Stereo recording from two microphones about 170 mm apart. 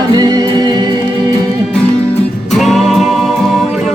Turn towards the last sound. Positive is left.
turn(degrees=0)  # may be behind; listen again after turning